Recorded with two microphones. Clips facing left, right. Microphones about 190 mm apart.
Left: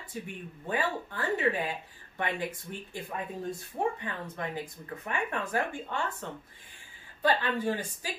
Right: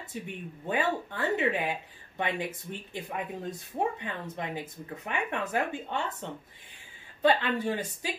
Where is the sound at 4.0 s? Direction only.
20° right (ahead or behind).